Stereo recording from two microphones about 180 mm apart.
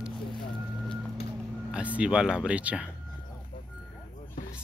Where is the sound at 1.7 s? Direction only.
5° right (ahead or behind).